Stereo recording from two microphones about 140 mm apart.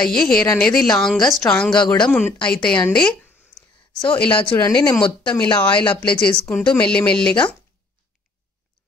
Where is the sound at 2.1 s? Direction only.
15° left (ahead or behind).